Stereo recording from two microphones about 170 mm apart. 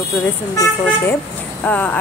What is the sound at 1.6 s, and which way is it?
Speech, 10° left (ahead or behind).